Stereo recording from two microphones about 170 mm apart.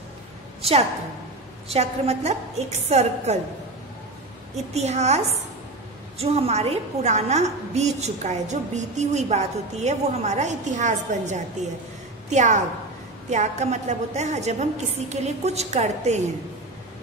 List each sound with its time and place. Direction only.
0.6 s a woman's voice: 35° right (ahead or behind)
4.7 s a woman's voice: 40° right (ahead or behind)